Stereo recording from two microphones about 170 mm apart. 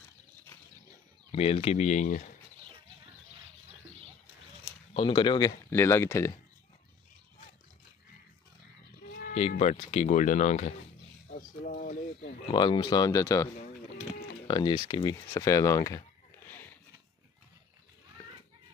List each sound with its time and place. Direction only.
1.3 s speech: 35° left (ahead or behind)
4.9 s speech: 30° left (ahead or behind)
5.7 s speech: 15° left (ahead or behind)
9.5 s speech: 45° left (ahead or behind)
11.2 s a sound: 55° left (ahead or behind)
12.4 s speech: 25° left (ahead or behind)
14.5 s speech: 25° left (ahead or behind)